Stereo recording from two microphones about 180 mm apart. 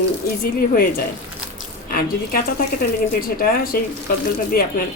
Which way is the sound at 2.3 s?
55° left (ahead or behind).